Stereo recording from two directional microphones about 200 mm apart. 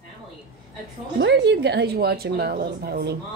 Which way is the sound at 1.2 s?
60° right (ahead or behind).